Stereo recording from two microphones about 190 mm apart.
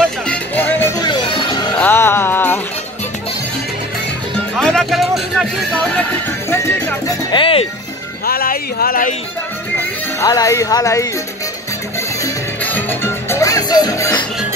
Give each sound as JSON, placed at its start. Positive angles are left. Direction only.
{"t": 0.3, "sound": "music", "side_deg": 10}
{"t": 1.8, "sound": "music", "side_deg": 10}
{"t": 4.6, "sound": "music", "side_deg": 5}
{"t": 8.3, "sound": "speech", "side_deg": 50}
{"t": 10.2, "sound": "speech", "side_deg": 15}
{"t": 12.2, "sound": "music", "side_deg": 10}